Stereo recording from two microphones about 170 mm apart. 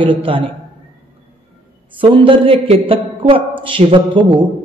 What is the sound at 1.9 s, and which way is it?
A man's voice, 30° right (ahead or behind).